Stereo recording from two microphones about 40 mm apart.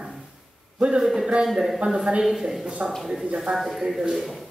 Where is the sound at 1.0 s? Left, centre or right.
Centre.